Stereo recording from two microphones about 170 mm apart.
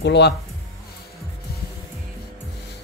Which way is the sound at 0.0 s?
85° left.